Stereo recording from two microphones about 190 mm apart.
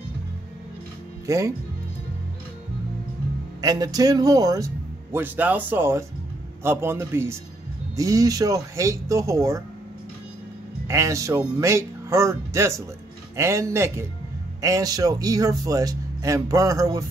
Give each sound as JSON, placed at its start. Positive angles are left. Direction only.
{"t": 1.2, "sound": "speech", "side_deg": -15}
{"t": 3.6, "sound": "speech", "side_deg": -20}
{"t": 10.9, "sound": "speech", "side_deg": -15}